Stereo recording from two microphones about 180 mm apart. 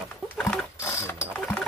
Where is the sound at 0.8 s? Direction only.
15° left (ahead or behind).